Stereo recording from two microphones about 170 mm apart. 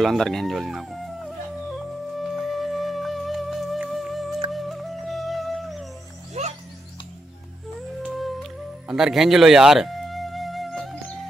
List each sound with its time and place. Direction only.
0.0 s speech: centre (ahead or behind)
2.1 s music: centre (ahead or behind)
6.4 s music: 40° right (ahead or behind)
8.0 s music: centre (ahead or behind)